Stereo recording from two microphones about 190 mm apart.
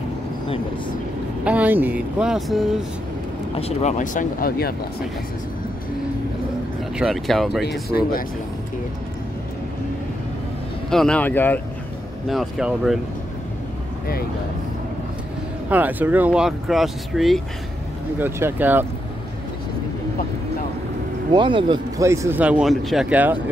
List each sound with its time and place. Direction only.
1.4 s speech: 5° right (ahead or behind)
3.5 s speech: 35° left (ahead or behind); by 4.7 s 55° left (ahead or behind)
7.0 s speech: centre (ahead or behind)
7.9 s speech: 50° left (ahead or behind)
10.9 s speech: 5° left (ahead or behind)
12.3 s speech: centre (ahead or behind)
15.7 s speech: 10° right (ahead or behind)
21.3 s speech: 25° right (ahead or behind); by 23.4 s 10° right (ahead or behind)